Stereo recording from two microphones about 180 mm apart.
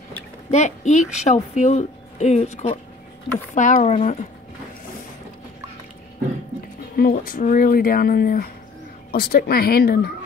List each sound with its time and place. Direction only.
0.5 s speech: 40° left (ahead or behind)
7.0 s a woman's voice: 55° left (ahead or behind)